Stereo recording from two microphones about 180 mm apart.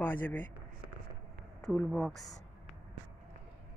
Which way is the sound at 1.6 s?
Centre (ahead or behind).